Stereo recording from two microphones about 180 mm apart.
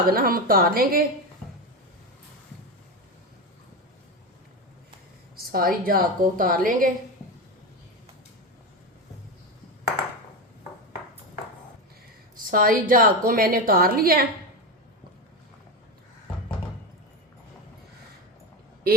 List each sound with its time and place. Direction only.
0.1 s a woman's voice: 55° right (ahead or behind)
5.5 s a woman's voice: 55° right (ahead or behind)
12.4 s a woman's voice: 50° right (ahead or behind)